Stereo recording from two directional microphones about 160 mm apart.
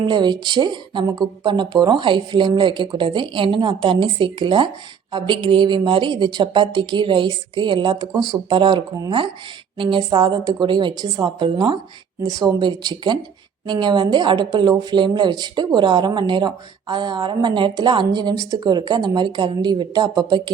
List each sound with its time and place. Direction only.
0.0 s speech: 30° right (ahead or behind)